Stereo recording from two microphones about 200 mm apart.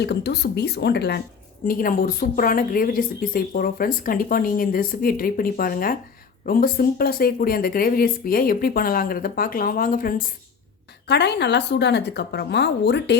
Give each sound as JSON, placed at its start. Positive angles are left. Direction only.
{"t": 0.0, "sound": "a woman's voice", "side_deg": 55}
{"t": 11.1, "sound": "a woman's voice", "side_deg": 55}